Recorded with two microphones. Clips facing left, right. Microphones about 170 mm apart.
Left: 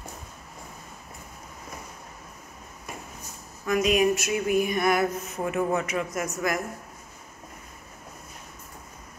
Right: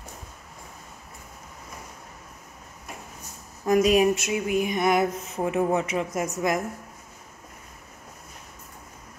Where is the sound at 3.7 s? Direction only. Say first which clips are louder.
Right 3 dB; 35° right (ahead or behind).